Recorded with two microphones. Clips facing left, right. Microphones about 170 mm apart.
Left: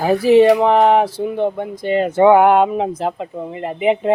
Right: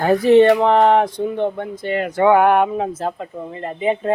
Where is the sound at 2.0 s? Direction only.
25° left (ahead or behind).